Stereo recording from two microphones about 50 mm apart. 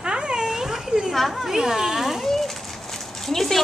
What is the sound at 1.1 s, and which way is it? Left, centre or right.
Children playing, centre.